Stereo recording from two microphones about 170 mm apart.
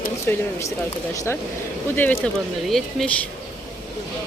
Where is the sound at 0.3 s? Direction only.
10° left (ahead or behind).